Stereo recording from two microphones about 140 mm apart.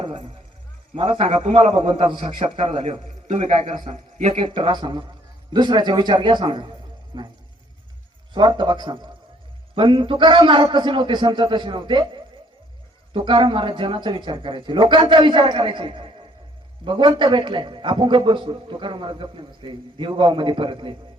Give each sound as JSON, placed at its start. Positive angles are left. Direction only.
{"t": 0.0, "sound": "music", "side_deg": -40}
{"t": 0.9, "sound": "a man's voice", "side_deg": -40}
{"t": 3.2, "sound": "a man's voice", "side_deg": -55}
{"t": 4.4, "sound": "a man's voice", "side_deg": -35}
{"t": 8.3, "sound": "a man's voice", "side_deg": -35}